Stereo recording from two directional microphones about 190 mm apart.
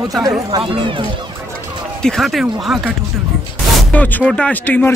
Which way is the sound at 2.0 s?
Centre (ahead or behind).